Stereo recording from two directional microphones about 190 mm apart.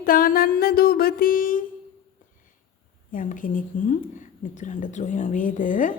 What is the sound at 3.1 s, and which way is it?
A woman's voice, 45° left (ahead or behind).